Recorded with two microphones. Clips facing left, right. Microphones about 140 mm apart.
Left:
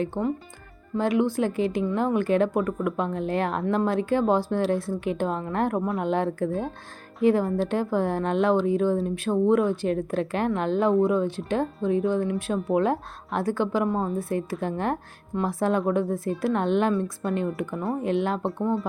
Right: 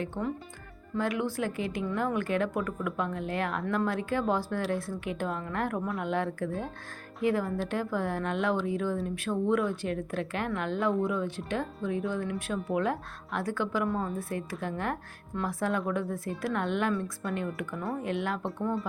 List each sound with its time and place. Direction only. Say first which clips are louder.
0.0 s a woman's voice: left 6 dB; 25° left (ahead or behind)